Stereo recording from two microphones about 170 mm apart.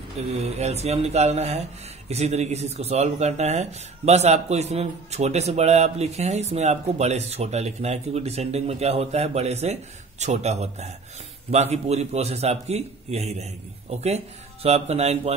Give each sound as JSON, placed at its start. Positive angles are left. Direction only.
{"t": 0.4, "sound": "speech", "side_deg": -40}